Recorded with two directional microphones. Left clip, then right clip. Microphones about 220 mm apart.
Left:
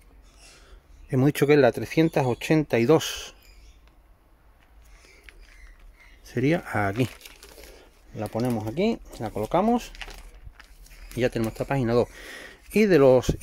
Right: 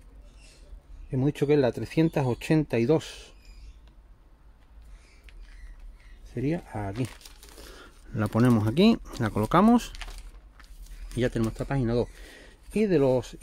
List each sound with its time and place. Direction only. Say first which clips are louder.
1.1 s speech: left 4 dB; 30° left (ahead or behind); by 2.9 s 10° left (ahead or behind)
2.9 s speech: left 5 dB; 25° left (ahead or behind)
6.2 s speech: left 7 dB; 30° left (ahead or behind)
7.2 s speech: left 2 dB; 10° right (ahead or behind)
10.6 s speech: left 5 dB; 5° left (ahead or behind); by 13.4 s 20° left (ahead or behind)